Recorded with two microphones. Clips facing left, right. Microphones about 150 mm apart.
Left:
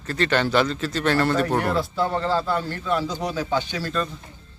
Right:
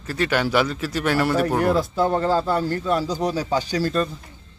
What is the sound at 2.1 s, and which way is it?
Speech, 45° right (ahead or behind).